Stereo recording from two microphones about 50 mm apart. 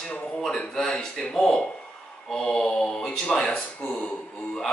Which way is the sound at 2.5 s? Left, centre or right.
Left.